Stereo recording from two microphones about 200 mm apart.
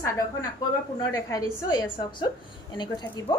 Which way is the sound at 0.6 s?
20° left (ahead or behind).